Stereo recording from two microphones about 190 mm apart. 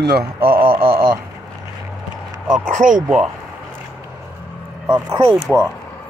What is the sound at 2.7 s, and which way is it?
Speech, 45° right (ahead or behind).